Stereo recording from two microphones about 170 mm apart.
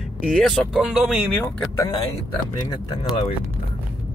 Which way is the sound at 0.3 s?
Centre (ahead or behind).